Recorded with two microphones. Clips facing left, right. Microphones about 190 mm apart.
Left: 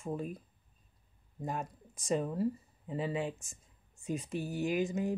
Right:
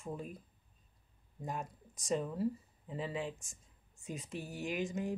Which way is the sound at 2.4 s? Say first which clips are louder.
Left 2 dB; centre (ahead or behind).